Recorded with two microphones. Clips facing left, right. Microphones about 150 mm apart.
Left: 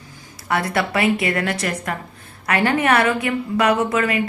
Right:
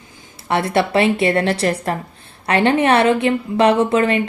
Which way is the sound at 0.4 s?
25° right (ahead or behind).